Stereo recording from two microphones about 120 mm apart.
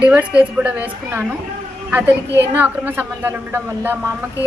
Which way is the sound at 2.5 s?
15° right (ahead or behind).